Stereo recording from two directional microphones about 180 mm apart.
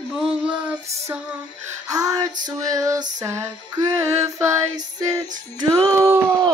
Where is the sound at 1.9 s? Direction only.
20° right (ahead or behind).